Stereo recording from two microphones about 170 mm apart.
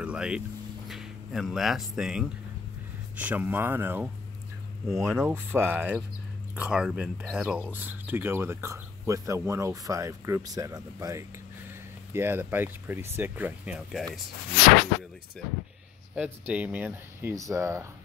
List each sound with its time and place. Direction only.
0.0 s speech: 5° right (ahead or behind)
16.2 s speech: 10° right (ahead or behind)